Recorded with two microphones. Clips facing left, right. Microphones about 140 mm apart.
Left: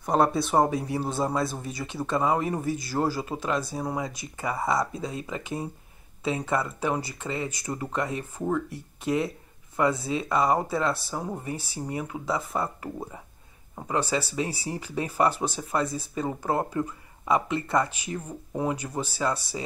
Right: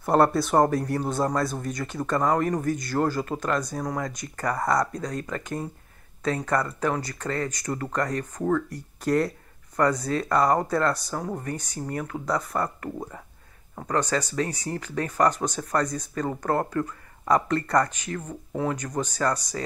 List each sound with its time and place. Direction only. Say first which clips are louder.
0.0 s speech: right 3 dB; centre (ahead or behind)